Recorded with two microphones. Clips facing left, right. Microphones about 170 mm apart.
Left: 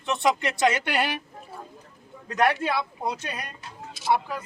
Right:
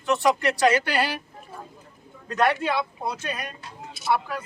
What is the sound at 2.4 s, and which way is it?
Speech, 15° left (ahead or behind).